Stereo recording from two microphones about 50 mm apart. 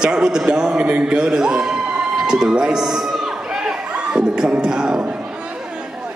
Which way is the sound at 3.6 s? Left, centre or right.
Centre.